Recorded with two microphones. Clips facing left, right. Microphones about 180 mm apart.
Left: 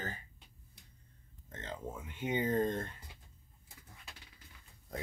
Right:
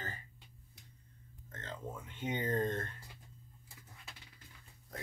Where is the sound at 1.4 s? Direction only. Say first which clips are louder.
Left 2 dB; 20° left (ahead or behind).